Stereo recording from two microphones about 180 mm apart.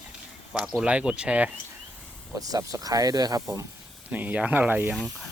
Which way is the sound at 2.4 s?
20° right (ahead or behind).